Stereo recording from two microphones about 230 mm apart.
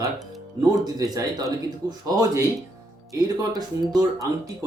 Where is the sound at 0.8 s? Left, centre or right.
Centre.